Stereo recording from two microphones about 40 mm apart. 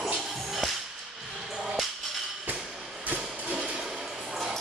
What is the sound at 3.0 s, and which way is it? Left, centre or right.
Music, right.